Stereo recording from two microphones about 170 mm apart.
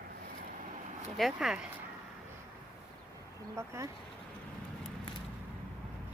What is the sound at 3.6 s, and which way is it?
Speech, 15° right (ahead or behind).